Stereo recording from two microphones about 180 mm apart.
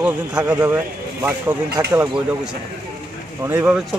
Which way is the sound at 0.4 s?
10° right (ahead or behind).